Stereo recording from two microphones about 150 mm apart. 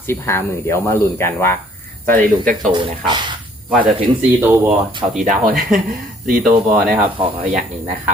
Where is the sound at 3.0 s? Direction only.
30° right (ahead or behind).